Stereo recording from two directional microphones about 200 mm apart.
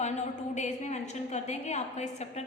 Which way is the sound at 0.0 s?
35° left (ahead or behind).